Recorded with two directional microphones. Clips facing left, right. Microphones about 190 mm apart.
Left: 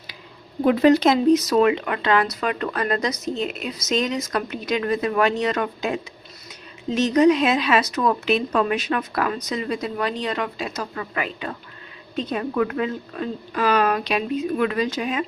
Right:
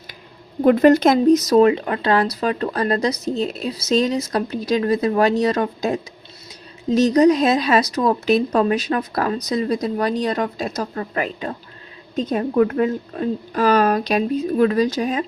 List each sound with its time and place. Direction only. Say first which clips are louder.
0.6 s speech: right 3 dB; 50° right (ahead or behind)